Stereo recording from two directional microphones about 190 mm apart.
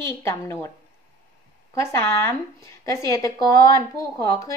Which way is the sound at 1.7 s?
15° left (ahead or behind).